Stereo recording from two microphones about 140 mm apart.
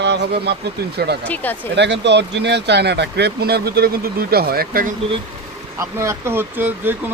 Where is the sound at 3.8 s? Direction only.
90° right.